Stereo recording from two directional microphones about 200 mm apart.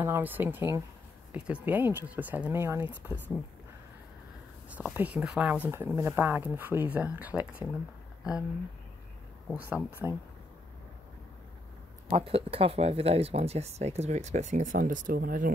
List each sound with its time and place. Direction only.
0.0 s speech: 10° right (ahead or behind)
4.6 s speech: 10° right (ahead or behind)
9.5 s speech: 5° right (ahead or behind)
12.1 s speech: 30° right (ahead or behind); by 15.5 s 45° right (ahead or behind)